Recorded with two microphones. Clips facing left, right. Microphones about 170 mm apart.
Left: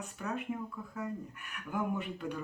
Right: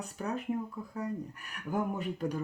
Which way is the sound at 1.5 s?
40° right (ahead or behind).